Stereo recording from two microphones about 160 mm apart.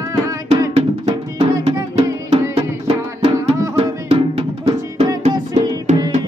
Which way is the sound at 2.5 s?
40° right (ahead or behind).